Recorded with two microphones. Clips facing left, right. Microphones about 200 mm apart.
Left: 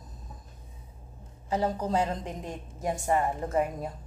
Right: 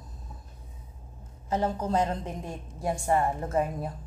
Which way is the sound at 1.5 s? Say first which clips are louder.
Even; 15° left (ahead or behind).